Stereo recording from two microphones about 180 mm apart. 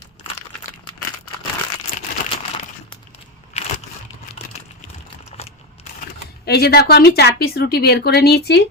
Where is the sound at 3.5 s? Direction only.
35° left (ahead or behind).